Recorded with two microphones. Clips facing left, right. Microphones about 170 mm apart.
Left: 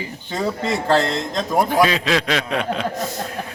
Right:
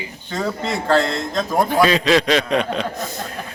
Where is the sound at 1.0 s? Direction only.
Centre (ahead or behind).